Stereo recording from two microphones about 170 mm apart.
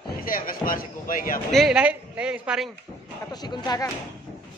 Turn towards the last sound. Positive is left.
turn(degrees=25)  # may be behind; listen again after turning